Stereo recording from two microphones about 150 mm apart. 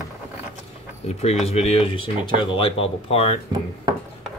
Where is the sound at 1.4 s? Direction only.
45° left (ahead or behind).